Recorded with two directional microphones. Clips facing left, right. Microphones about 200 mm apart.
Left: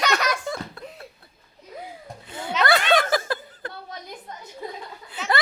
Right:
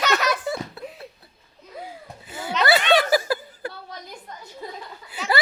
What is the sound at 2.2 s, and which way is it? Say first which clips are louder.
Chuckle: right 1 dB; 5° right (ahead or behind).